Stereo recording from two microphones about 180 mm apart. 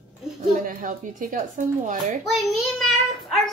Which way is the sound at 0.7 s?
50° right (ahead or behind).